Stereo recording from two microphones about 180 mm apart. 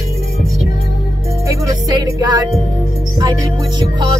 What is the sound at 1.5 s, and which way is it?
Music, 25° right (ahead or behind).